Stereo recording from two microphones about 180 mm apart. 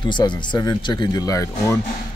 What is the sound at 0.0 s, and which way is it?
Speech, 25° left (ahead or behind).